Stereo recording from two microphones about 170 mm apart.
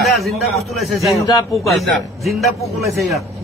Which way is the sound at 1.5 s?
Centre (ahead or behind).